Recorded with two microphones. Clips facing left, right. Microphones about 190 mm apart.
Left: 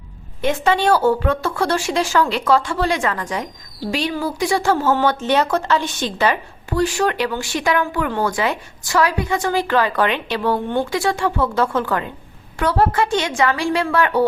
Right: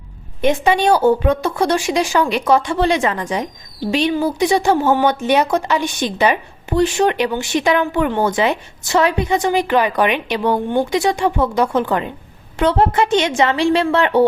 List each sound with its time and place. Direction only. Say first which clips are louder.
0.4 s a woman's voice: right 3 dB; 15° right (ahead or behind)